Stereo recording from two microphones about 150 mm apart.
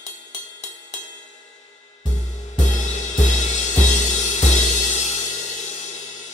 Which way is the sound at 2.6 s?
50° left (ahead or behind).